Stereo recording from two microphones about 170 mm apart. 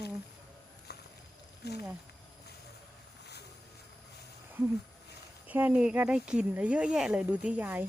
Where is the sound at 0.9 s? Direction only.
70° left (ahead or behind).